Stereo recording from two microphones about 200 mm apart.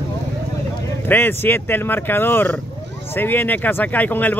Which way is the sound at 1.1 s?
10° left (ahead or behind).